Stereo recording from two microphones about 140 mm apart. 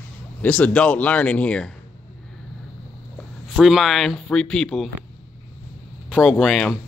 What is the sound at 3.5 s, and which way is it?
Speech, centre (ahead or behind).